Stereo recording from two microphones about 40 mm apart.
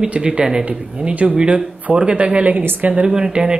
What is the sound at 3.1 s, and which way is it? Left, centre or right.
Speech, centre.